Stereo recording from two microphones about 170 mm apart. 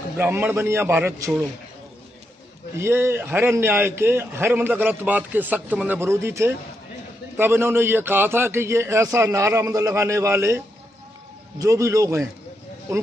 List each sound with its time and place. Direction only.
0.2 s a man's voice: 15° right (ahead or behind)
2.8 s a man's voice: 15° right (ahead or behind)